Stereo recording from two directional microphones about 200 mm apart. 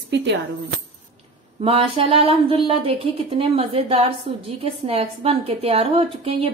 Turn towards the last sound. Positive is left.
turn(degrees=-30)  # may be behind; listen again after turning